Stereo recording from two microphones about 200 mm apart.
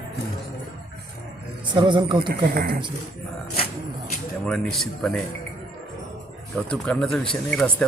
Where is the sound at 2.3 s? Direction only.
50° right (ahead or behind).